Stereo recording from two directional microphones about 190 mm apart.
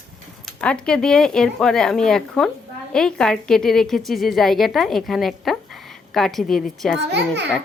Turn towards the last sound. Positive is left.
turn(degrees=-65)  # may be behind; listen again after turning